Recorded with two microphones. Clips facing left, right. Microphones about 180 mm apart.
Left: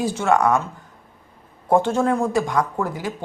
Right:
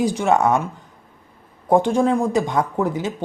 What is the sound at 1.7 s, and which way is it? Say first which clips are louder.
Speech: right 2 dB; 15° right (ahead or behind).